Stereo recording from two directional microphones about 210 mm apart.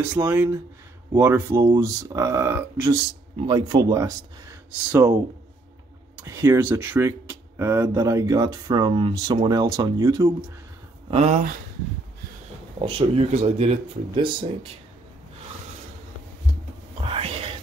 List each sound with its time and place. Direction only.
0.0 s speech: 10° right (ahead or behind)
1.6 s speech: 20° right (ahead or behind)
6.2 s speech: 15° right (ahead or behind)
11.1 s speech: 30° right (ahead or behind)
12.7 s speech: 25° right (ahead or behind)
17.0 s whispering: 25° right (ahead or behind)